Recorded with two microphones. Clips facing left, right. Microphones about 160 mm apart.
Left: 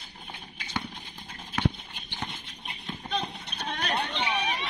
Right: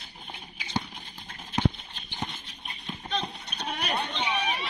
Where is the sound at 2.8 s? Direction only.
Centre (ahead or behind).